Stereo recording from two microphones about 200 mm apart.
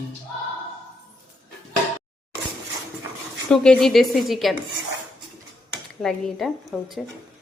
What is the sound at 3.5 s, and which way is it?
A woman's voice, 5° left (ahead or behind).